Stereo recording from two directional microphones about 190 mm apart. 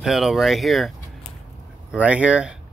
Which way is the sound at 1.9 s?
5° right (ahead or behind).